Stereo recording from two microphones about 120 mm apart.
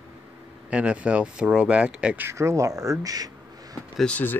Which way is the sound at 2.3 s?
25° right (ahead or behind).